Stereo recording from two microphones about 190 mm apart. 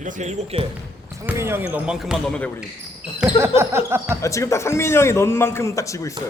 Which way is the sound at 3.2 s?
10° right (ahead or behind).